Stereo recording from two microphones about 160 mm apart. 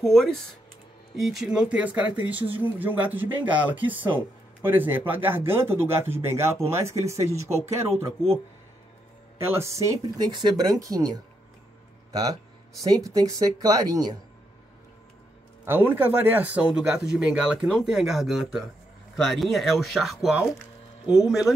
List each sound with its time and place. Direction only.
0.0 s a man's voice: centre (ahead or behind); by 7.8 s 15° right (ahead or behind)
9.4 s speech: 15° right (ahead or behind)
15.6 s a man's voice: 15° right (ahead or behind)